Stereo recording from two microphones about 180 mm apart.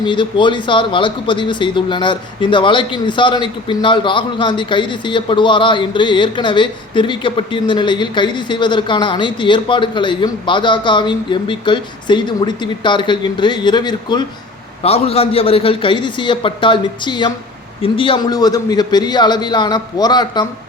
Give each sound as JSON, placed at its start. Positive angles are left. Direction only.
{"t": 0.0, "sound": "speech", "side_deg": 25}